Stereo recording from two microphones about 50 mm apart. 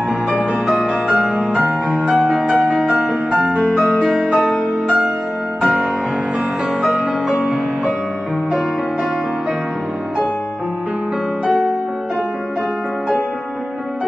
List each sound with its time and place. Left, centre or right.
0.3 s music: right
2.4 s music: right
3.8 s music: right
11.4 s music: centre